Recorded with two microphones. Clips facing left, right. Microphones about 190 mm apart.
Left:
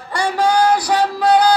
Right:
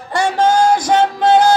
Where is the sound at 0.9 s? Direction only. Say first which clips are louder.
Right 3 dB; 25° right (ahead or behind).